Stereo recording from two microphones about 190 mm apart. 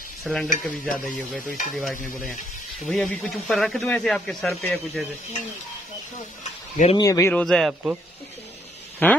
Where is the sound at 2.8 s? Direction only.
Centre (ahead or behind).